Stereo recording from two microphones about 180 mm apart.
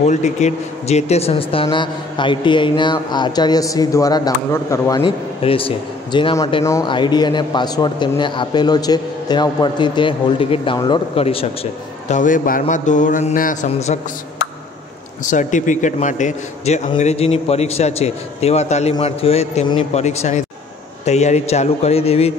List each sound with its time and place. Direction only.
0.0 s speech: 40° left (ahead or behind); by 5.0 s 15° left (ahead or behind)
5.0 s speech: 30° left (ahead or behind)
12.1 s speech: 45° left (ahead or behind)
15.2 s a man's voice: 45° left (ahead or behind)